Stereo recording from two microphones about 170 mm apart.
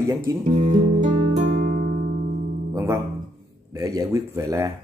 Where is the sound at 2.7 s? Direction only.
15° right (ahead or behind).